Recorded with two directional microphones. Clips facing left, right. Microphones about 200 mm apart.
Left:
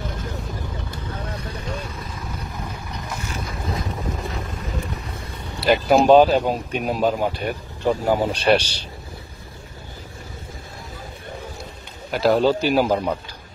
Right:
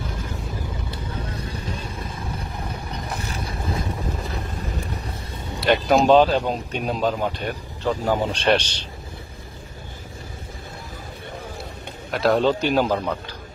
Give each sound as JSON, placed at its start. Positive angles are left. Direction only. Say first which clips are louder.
{"t": 2.0, "sound": "vehicle", "louder": "right 1 dB", "side_deg": -30}
{"t": 3.1, "sound": "boat", "louder": "left 1 dB", "side_deg": -35}
{"t": 5.6, "sound": "speech", "louder": "left 2 dB", "side_deg": 0}
{"t": 12.1, "sound": "a man's voice", "louder": "left 2 dB", "side_deg": 0}